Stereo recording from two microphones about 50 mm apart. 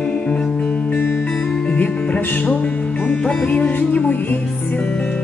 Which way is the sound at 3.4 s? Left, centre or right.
Left.